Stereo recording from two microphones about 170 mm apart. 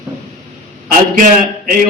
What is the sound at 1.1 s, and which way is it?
Speech, 50° right (ahead or behind).